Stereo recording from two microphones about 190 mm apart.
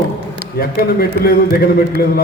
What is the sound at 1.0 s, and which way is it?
Speech, 50° left (ahead or behind).